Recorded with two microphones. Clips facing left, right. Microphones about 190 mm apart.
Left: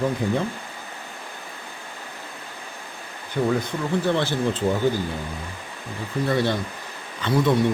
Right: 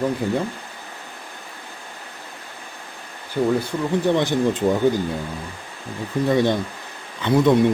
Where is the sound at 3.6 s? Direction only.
15° right (ahead or behind).